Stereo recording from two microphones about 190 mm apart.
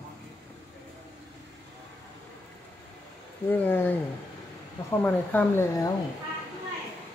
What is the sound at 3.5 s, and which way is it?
Speech, 10° left (ahead or behind).